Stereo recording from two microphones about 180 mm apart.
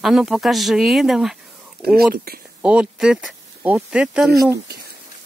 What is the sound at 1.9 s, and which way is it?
Speech, 60° right (ahead or behind).